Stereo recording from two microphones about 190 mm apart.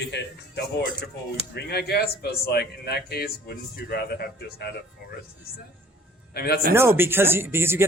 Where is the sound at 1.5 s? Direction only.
55° left (ahead or behind).